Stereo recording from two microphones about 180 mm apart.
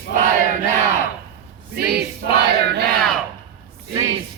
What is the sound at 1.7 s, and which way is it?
Choir, 60° right (ahead or behind).